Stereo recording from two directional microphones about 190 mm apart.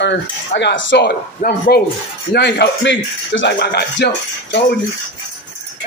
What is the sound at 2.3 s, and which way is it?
Speech, 65° left (ahead or behind).